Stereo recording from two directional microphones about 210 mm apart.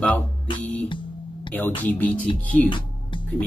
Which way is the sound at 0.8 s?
25° left (ahead or behind).